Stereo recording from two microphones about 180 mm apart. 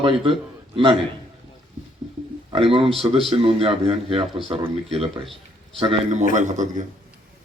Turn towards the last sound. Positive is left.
turn(degrees=-45)  # may be behind; listen again after turning